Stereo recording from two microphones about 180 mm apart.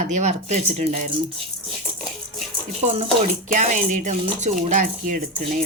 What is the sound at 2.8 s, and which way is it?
Speech, 35° right (ahead or behind).